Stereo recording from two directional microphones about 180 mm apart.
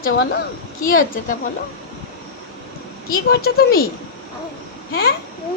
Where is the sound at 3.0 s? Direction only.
55° left (ahead or behind).